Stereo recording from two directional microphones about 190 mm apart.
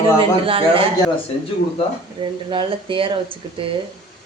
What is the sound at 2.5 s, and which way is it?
A woman's voice, 25° right (ahead or behind).